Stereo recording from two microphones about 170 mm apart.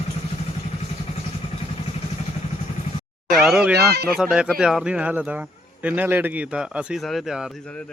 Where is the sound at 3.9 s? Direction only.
70° right (ahead or behind).